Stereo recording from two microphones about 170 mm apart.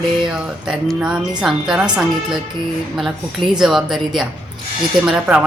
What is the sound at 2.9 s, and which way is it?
A woman's voice, centre (ahead or behind).